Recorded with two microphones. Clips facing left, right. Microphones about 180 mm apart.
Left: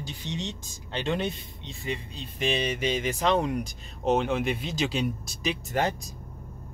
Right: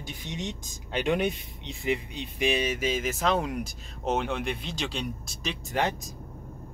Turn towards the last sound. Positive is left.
turn(degrees=0)  # may be behind; listen again after turning